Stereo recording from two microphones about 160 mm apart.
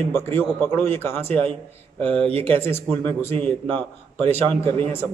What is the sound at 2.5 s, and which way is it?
A man's voice, 15° left (ahead or behind).